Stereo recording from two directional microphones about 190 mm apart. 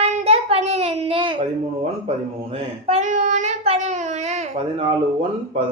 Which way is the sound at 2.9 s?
40° right (ahead or behind).